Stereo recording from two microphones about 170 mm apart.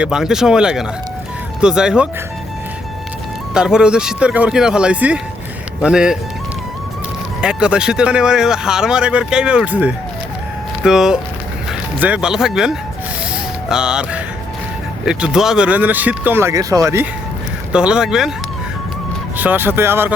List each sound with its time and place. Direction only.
0.0 s speech: 5° right (ahead or behind)
3.5 s speech: 5° right (ahead or behind)
7.4 s speech: 5° right (ahead or behind)
17.7 s speech: 5° right (ahead or behind)
19.4 s speech: 10° right (ahead or behind)